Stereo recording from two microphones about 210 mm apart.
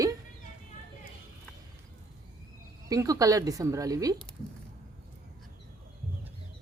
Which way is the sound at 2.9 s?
15° right (ahead or behind).